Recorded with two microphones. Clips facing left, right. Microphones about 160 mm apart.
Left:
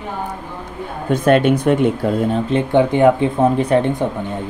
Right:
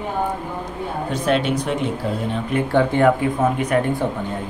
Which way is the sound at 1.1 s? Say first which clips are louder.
Left 7 dB; 55° left (ahead or behind).